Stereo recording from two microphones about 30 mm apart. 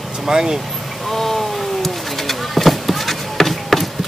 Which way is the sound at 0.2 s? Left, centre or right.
Centre.